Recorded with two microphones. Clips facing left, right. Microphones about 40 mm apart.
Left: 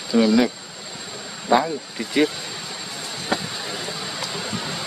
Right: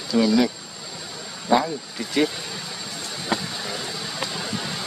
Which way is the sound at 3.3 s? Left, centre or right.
Centre.